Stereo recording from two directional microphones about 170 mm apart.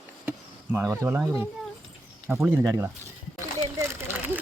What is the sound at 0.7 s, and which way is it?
Speech, 15° right (ahead or behind).